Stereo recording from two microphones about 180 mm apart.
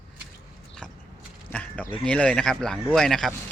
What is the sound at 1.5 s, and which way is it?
A man's voice, 5° left (ahead or behind).